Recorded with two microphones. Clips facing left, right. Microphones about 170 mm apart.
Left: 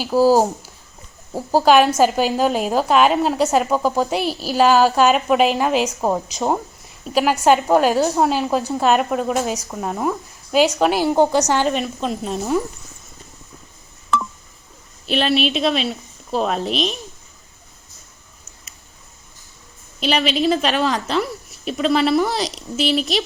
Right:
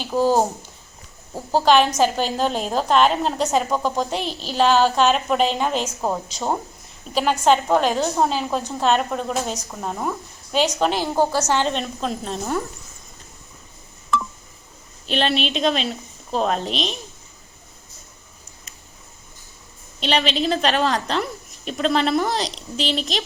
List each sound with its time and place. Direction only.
0.0 s a woman's voice: 5° left (ahead or behind)
6.0 s a woman's voice: 20° left (ahead or behind)
7.1 s a woman's voice: 10° left (ahead or behind)
15.0 s a woman's voice: 5° left (ahead or behind)
20.0 s a woman's voice: 5° left (ahead or behind)